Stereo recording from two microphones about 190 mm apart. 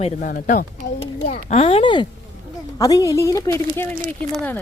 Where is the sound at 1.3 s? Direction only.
35° left (ahead or behind); by 4.6 s 10° left (ahead or behind).